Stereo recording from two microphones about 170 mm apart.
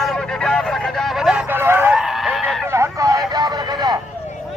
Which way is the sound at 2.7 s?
15° right (ahead or behind).